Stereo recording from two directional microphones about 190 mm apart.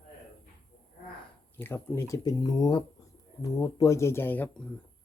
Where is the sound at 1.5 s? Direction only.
10° left (ahead or behind).